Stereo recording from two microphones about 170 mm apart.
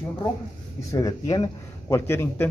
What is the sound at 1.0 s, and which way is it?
Speech, 20° left (ahead or behind).